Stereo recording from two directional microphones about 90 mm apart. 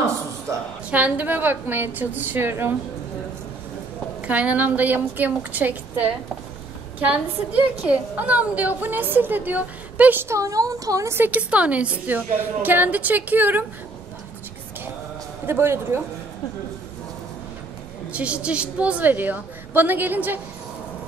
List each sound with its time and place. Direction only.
0.8 s a woman's voice: 15° right (ahead or behind)
4.2 s a woman's voice: 15° right (ahead or behind)
10.2 s speech: 35° right (ahead or behind)
11.1 s a woman's voice: 15° right (ahead or behind)
15.4 s a woman's voice: 30° right (ahead or behind)
18.1 s a woman's voice: 15° right (ahead or behind)